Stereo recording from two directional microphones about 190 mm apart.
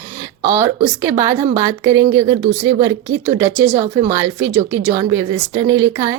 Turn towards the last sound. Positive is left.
turn(degrees=-15)  # may be behind; listen again after turning